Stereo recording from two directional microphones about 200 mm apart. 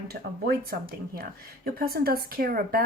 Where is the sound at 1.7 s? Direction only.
50° right (ahead or behind).